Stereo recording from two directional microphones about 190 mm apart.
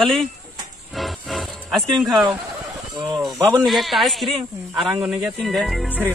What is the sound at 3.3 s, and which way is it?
Speech, 15° right (ahead or behind).